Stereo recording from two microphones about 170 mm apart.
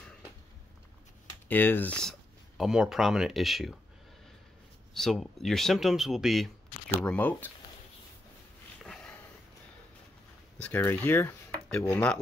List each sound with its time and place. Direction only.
1.5 s speech: 10° left (ahead or behind)
4.9 s speech: centre (ahead or behind)
8.8 s sniff: 5° left (ahead or behind)
10.6 s speech: 10° left (ahead or behind)